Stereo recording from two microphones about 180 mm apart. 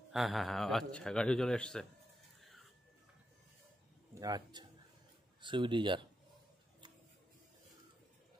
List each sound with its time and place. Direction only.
0.1 s a man's voice: centre (ahead or behind)
4.1 s a man's voice: 20° right (ahead or behind)